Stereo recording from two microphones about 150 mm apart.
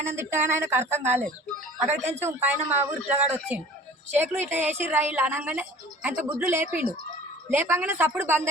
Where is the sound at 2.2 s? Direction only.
15° right (ahead or behind).